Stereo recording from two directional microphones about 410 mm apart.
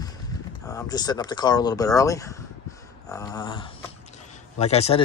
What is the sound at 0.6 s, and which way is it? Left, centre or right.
Speech, centre.